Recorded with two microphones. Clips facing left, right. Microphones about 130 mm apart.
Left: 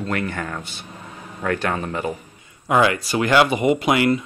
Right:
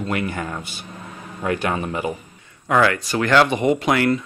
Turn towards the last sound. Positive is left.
turn(degrees=10)  # may be behind; listen again after turning